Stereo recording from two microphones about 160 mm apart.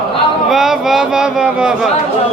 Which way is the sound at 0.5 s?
5° right (ahead or behind).